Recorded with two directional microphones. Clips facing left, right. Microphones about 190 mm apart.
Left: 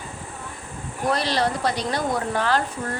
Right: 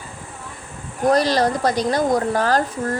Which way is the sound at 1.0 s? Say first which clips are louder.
Right 6 dB; 40° right (ahead or behind).